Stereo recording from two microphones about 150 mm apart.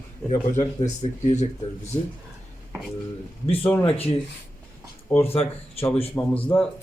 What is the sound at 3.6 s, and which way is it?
Speech, 15° left (ahead or behind).